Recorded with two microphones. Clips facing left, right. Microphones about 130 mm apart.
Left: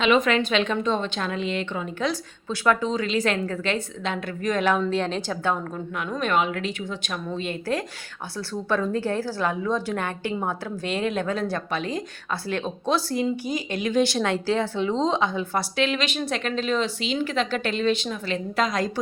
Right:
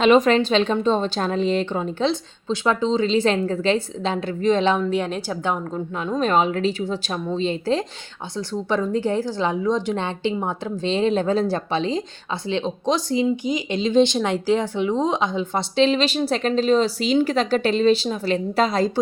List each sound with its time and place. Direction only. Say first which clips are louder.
0.0 s a woman's voice: right 5 dB; 35° right (ahead or behind); by 6.1 s 20° right (ahead or behind)
6.1 s a woman's voice: right 4 dB; 35° right (ahead or behind)